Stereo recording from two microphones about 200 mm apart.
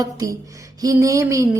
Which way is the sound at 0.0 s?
15° right (ahead or behind).